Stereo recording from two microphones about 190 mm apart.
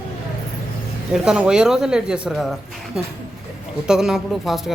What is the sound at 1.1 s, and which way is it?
Speech, 5° right (ahead or behind).